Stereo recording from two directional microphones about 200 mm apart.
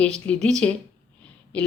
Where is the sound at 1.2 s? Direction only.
5° left (ahead or behind).